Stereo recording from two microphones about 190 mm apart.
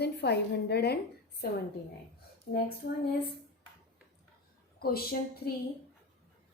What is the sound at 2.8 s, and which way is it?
Speech, 60° left (ahead or behind).